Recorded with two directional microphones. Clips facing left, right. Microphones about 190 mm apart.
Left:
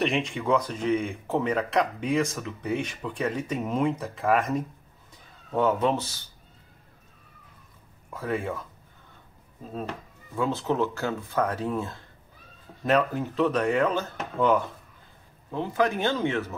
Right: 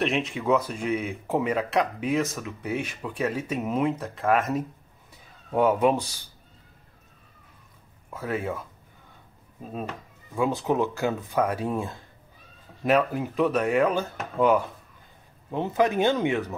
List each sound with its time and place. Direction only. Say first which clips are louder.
0.0 s speech: even; centre (ahead or behind)
5.5 s speech: right 2 dB; 10° right (ahead or behind)
8.1 s speech: even; 5° right (ahead or behind)
10.3 s speech: right 2 dB; 15° right (ahead or behind)